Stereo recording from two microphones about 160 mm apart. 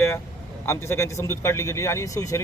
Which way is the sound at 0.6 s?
15° left (ahead or behind).